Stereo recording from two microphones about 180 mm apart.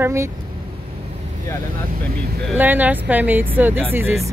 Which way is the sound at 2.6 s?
10° right (ahead or behind).